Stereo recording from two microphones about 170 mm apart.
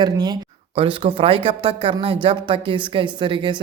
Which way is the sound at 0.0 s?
25° right (ahead or behind).